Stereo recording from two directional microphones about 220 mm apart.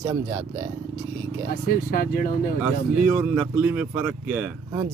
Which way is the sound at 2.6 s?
5° right (ahead or behind).